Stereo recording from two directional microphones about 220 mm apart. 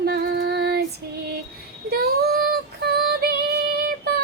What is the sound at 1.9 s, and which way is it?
Child singing, 45° right (ahead or behind).